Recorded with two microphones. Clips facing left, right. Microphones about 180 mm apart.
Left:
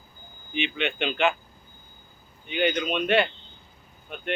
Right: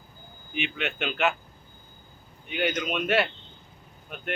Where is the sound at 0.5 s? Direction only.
5° right (ahead or behind).